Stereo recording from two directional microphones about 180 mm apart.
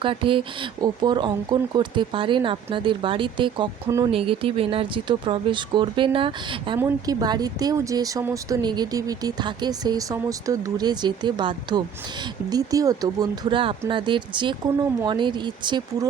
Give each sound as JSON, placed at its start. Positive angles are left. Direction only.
{"t": 0.0, "sound": "speech", "side_deg": -30}
{"t": 3.8, "sound": "speech", "side_deg": -15}
{"t": 4.1, "sound": "speech", "side_deg": -30}